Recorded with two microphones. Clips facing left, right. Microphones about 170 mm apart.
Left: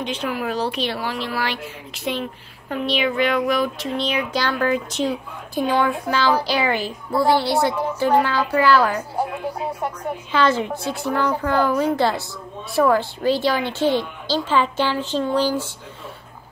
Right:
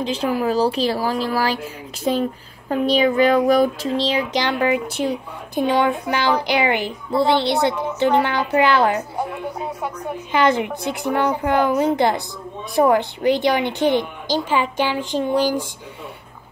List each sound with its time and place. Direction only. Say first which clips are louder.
0.0 s speech: right 4 dB; 35° right (ahead or behind)
2.7 s speech: right 5 dB; 40° right (ahead or behind)
4.1 s a woman's voice: right 2 dB; 25° right (ahead or behind)
9.1 s speech: left 1 dB; 10° left (ahead or behind)
10.3 s speech: right 2 dB; 15° right (ahead or behind)